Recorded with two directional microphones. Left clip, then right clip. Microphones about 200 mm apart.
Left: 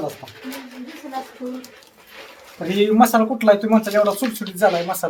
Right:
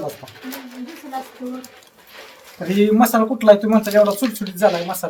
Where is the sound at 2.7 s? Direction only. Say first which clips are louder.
Left 1 dB; 15° left (ahead or behind).